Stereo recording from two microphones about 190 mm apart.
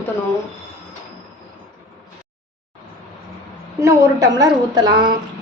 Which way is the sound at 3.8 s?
15° right (ahead or behind).